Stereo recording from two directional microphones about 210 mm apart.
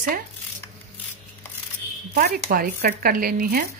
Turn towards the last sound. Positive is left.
turn(degrees=-45)  # may be behind; listen again after turning